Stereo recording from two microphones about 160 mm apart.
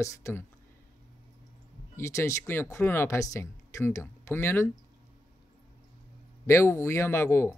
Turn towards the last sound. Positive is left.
turn(degrees=15)  # may be behind; listen again after turning